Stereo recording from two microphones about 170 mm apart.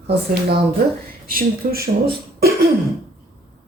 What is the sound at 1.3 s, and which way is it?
Speech, 55° right (ahead or behind).